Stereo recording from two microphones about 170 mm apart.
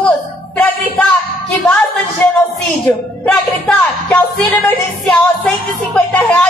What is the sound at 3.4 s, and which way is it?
A man's voice, 5° left (ahead or behind).